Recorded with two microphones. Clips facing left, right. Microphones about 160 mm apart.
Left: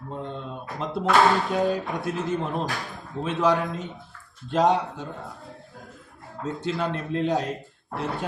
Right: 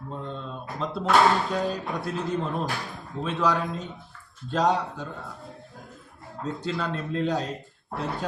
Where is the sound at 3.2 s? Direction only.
20° left (ahead or behind).